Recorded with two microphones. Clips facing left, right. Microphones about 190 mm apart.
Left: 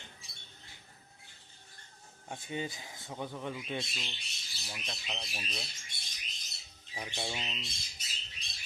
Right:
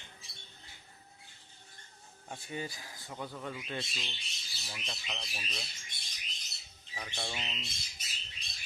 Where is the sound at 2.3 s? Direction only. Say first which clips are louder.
Left 2 dB; 20° left (ahead or behind).